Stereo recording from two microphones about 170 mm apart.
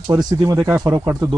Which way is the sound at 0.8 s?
20° right (ahead or behind).